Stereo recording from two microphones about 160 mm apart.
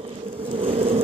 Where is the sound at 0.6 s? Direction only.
35° right (ahead or behind).